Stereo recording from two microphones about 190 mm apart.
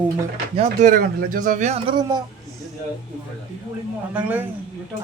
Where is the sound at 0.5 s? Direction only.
40° right (ahead or behind); by 2.2 s 20° right (ahead or behind).